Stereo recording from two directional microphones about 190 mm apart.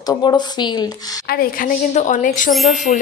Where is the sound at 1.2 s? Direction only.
50° left (ahead or behind).